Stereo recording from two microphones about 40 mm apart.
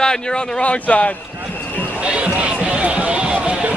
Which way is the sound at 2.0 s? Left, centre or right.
Right.